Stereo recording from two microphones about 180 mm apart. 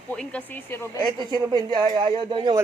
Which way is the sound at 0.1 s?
5° left (ahead or behind).